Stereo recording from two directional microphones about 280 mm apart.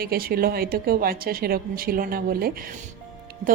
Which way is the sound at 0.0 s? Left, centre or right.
Right.